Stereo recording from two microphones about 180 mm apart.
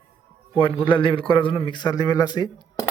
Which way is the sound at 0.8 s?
25° left (ahead or behind).